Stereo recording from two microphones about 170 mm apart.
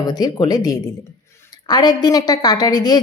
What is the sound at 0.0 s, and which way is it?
A woman's voice, 25° left (ahead or behind).